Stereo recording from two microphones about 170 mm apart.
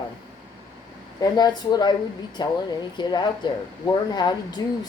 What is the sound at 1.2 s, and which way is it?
Speech, 25° left (ahead or behind).